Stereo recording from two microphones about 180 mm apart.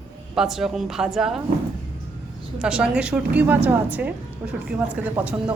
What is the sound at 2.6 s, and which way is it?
A woman's voice, 5° right (ahead or behind).